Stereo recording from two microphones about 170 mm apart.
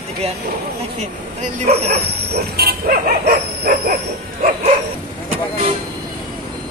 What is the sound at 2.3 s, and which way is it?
Dog, 65° right (ahead or behind).